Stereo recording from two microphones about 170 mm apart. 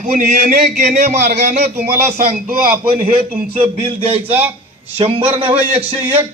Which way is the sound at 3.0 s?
10° right (ahead or behind).